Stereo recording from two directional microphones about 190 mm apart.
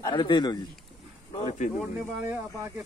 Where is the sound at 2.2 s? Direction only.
15° right (ahead or behind).